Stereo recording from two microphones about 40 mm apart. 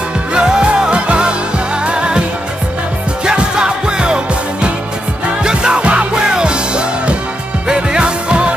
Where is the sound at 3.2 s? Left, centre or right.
Right.